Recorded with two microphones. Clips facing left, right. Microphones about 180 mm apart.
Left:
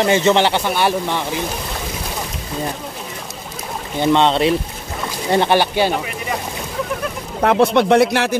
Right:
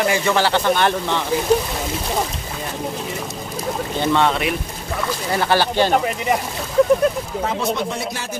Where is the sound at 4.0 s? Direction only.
20° left (ahead or behind).